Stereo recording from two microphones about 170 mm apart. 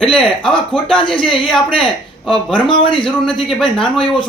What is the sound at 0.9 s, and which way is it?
Speech, 30° left (ahead or behind).